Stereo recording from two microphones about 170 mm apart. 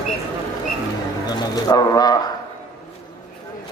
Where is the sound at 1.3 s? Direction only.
20° left (ahead or behind).